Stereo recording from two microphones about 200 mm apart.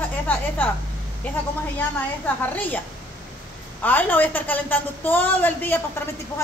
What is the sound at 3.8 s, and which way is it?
A woman's voice, 10° left (ahead or behind).